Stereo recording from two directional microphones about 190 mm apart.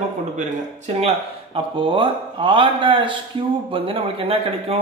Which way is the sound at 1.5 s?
25° right (ahead or behind).